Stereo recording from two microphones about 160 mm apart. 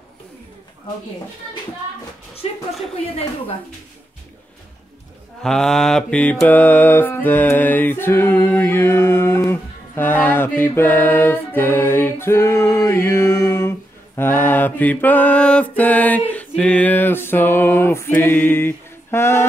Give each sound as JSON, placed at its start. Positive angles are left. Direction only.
{"t": 2.4, "sound": "speech", "side_deg": 40}
{"t": 5.4, "sound": "mantra", "side_deg": 5}